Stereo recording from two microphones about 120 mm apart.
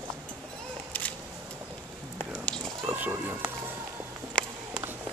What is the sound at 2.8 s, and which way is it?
Cat, 15° right (ahead or behind).